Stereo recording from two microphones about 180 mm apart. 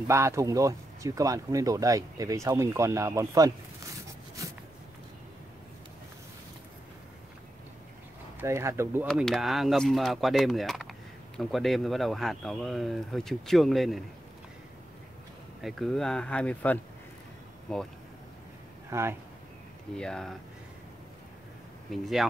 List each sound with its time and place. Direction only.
0.1 s speech: 15° right (ahead or behind)
8.4 s speech: 15° right (ahead or behind)
9.1 s speech: centre (ahead or behind)
15.6 s speech: centre (ahead or behind)
18.9 s speech: 15° right (ahead or behind)
20.0 s speech: 5° left (ahead or behind)
21.9 s speech: centre (ahead or behind)